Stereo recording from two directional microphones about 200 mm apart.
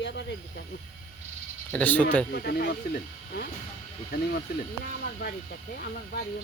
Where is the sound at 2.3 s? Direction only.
50° left (ahead or behind).